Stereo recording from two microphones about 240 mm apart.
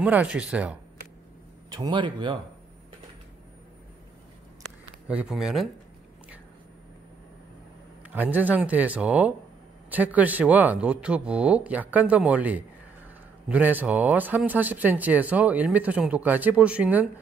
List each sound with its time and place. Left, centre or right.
0.0 s speech: centre
1.7 s speech: centre
5.0 s speech: centre
8.0 s a man's voice: centre